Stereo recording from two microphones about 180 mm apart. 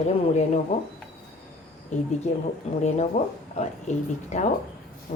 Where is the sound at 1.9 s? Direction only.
40° left (ahead or behind).